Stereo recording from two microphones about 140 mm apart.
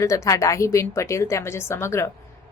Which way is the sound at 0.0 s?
20° left (ahead or behind).